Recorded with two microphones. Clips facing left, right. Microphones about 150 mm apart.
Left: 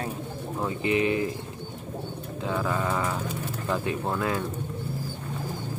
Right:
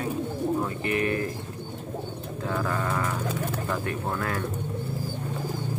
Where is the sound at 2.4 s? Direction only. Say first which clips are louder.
Left 1 dB; 15° left (ahead or behind).